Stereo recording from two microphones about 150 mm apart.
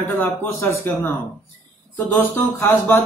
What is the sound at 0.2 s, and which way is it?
A man's voice, 15° left (ahead or behind).